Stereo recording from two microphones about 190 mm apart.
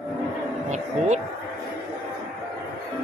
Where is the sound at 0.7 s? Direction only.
40° right (ahead or behind).